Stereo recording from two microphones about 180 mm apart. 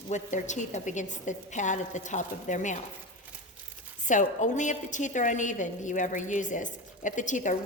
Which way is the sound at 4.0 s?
45° left (ahead or behind).